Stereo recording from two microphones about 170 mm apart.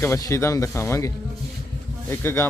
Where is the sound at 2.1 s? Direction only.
15° left (ahead or behind).